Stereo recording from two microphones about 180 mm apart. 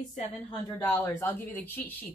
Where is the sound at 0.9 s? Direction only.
10° left (ahead or behind).